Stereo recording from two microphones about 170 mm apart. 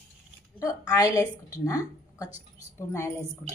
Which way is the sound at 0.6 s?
20° left (ahead or behind).